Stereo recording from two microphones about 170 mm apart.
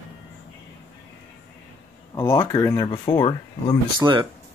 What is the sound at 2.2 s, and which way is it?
Speech, 20° left (ahead or behind).